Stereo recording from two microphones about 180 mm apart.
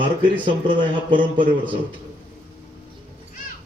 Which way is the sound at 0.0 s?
25° right (ahead or behind).